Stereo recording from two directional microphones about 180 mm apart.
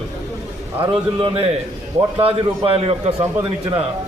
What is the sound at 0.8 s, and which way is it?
A man's voice, 30° right (ahead or behind).